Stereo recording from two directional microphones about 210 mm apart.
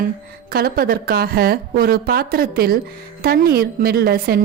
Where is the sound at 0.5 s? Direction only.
45° right (ahead or behind).